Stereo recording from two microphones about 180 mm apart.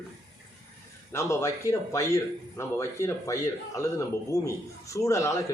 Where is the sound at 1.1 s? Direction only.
15° left (ahead or behind).